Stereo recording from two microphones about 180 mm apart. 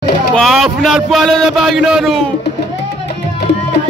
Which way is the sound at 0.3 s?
Centre (ahead or behind).